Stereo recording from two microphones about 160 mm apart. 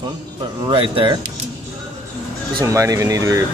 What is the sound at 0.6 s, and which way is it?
Speech, 30° right (ahead or behind).